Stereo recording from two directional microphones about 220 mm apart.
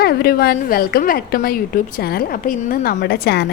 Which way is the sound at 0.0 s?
45° left (ahead or behind).